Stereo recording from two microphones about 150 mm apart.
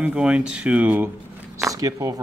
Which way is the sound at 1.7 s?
25° right (ahead or behind).